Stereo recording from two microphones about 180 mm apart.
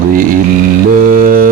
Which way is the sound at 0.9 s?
50° right (ahead or behind).